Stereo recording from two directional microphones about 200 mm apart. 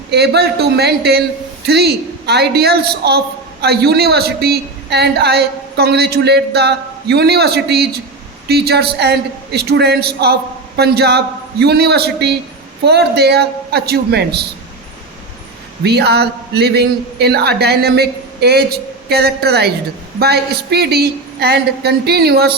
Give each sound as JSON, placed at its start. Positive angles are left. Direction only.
{"t": 0.1, "sound": "a man's voice", "side_deg": -55}
{"t": 15.8, "sound": "a man's voice", "side_deg": -55}